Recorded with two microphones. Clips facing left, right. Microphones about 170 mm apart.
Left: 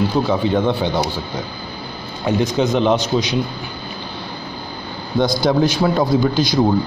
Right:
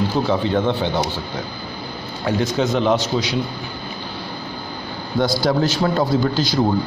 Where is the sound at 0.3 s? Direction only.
15° left (ahead or behind).